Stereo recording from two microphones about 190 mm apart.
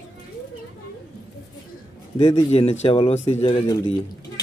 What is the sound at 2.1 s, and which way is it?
Speech, 35° left (ahead or behind).